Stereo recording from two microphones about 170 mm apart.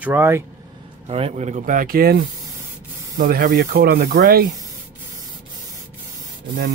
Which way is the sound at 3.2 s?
60° right (ahead or behind).